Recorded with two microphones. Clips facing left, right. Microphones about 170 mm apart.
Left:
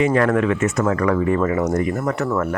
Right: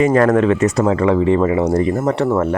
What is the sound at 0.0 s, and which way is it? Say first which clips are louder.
Speech: right 4 dB; 40° right (ahead or behind).